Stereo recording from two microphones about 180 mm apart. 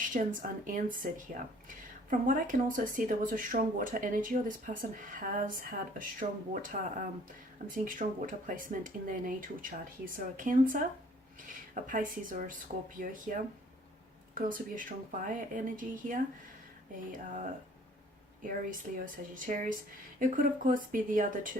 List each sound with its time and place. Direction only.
0.1 s speech: 45° right (ahead or behind)
14.3 s speech: 50° right (ahead or behind)
18.9 s speech: 50° right (ahead or behind)